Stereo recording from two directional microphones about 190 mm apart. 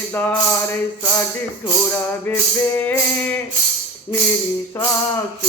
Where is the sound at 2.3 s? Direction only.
10° left (ahead or behind).